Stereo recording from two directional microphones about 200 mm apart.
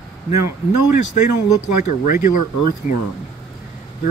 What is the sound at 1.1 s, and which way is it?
Speech, 40° left (ahead or behind).